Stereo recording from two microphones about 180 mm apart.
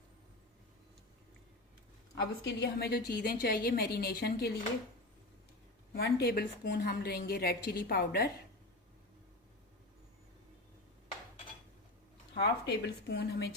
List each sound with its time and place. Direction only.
2.1 s a woman's voice: 70° left (ahead or behind)
5.9 s a woman's voice: 60° left (ahead or behind)
12.3 s speech: 70° left (ahead or behind)